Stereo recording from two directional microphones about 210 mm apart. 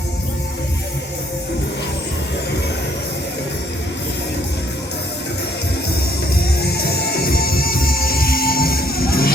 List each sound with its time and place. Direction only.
6.3 s music: 50° left (ahead or behind)